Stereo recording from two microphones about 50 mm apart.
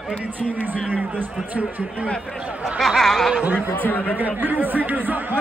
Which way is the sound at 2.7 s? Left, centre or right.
Centre.